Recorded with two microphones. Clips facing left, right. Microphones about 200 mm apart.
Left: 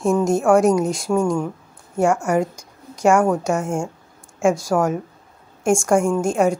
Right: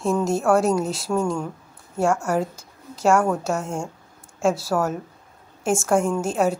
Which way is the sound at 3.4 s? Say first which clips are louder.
Left 4 dB; centre (ahead or behind).